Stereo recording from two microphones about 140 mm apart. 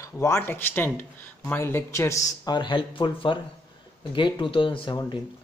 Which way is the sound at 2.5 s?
35° left (ahead or behind).